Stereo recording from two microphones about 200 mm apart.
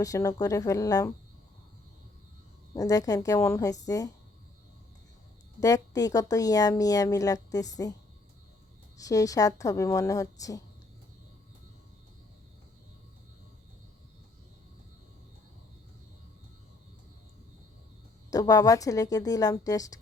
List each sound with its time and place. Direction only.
0.0 s a woman's voice: 15° left (ahead or behind)
2.7 s a woman's voice: 15° left (ahead or behind)
5.5 s a woman's voice: 15° left (ahead or behind)
9.0 s a woman's voice: 15° left (ahead or behind)
18.3 s a woman's voice: 20° left (ahead or behind)